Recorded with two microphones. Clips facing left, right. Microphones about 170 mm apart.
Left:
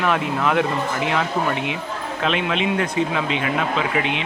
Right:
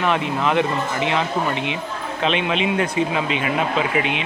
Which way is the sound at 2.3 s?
Centre (ahead or behind).